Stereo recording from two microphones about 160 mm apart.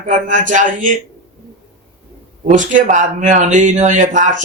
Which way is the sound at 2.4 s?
50° right (ahead or behind).